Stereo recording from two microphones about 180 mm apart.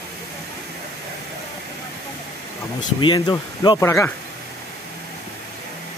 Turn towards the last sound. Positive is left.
turn(degrees=15)  # may be behind; listen again after turning